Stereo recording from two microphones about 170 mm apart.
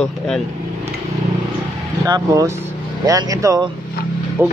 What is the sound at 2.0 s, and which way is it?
Speech, 20° right (ahead or behind).